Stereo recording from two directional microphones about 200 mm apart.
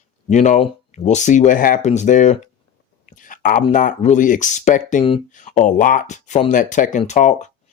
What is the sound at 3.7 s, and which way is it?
Speech, 40° left (ahead or behind).